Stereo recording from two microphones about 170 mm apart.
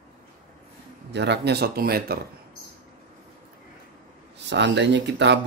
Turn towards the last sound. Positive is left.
turn(degrees=-90)